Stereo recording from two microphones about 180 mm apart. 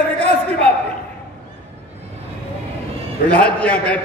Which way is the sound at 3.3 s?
5° left (ahead or behind).